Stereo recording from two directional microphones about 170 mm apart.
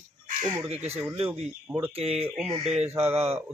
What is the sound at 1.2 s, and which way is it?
Speech, 10° right (ahead or behind).